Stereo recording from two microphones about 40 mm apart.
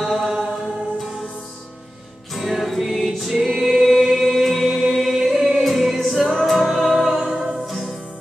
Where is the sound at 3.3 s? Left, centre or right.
Centre.